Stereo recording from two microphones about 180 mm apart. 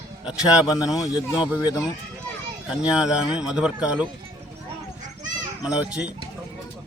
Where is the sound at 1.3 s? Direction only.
5° right (ahead or behind).